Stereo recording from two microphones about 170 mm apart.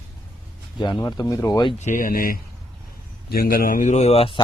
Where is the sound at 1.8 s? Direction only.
50° left (ahead or behind).